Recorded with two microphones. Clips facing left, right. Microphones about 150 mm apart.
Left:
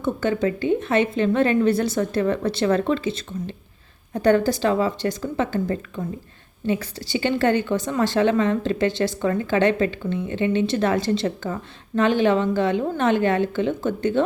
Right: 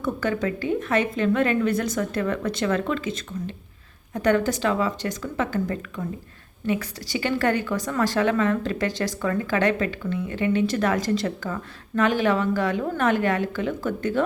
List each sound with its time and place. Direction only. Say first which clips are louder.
0.0 s a woman's voice: left 3 dB; 25° left (ahead or behind)